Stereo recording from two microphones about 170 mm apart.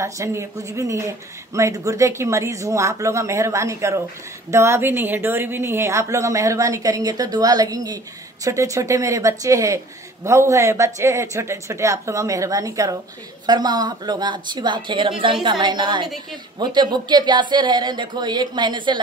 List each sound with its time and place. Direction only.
0.0 s speech: 15° right (ahead or behind)